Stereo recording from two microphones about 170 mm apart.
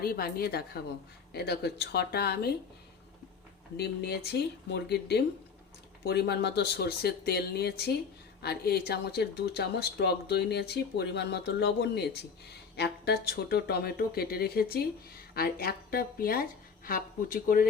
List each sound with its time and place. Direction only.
0.0 s a woman's voice: 65° left (ahead or behind)
3.8 s a woman's voice: 70° left (ahead or behind); by 17.7 s 55° left (ahead or behind)